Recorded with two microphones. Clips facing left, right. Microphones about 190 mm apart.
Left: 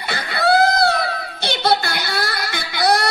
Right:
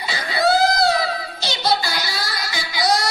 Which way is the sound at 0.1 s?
60° left (ahead or behind).